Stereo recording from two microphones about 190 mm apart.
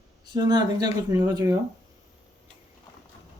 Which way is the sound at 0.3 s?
20° right (ahead or behind).